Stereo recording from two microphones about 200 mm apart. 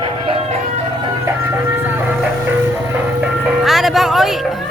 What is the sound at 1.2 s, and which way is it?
Music, 10° right (ahead or behind).